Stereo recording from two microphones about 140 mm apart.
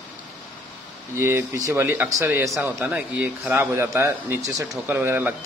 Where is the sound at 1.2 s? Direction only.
20° right (ahead or behind).